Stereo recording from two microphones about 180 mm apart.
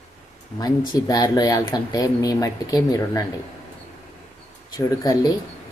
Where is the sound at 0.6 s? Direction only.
20° left (ahead or behind).